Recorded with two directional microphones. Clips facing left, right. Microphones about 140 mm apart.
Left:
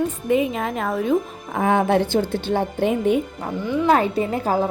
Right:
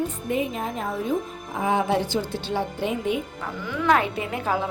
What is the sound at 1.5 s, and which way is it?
A woman's voice, 60° left (ahead or behind).